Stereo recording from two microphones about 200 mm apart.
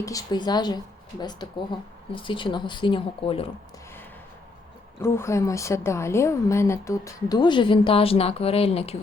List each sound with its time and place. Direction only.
0.0 s speech: 15° left (ahead or behind)
4.9 s a woman's voice: 10° left (ahead or behind); by 9.0 s 30° left (ahead or behind)